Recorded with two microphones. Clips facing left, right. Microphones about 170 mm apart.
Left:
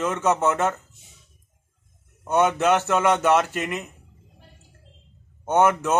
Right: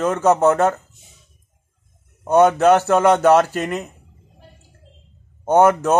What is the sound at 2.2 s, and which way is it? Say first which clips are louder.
Speech: right 7 dB; 35° right (ahead or behind).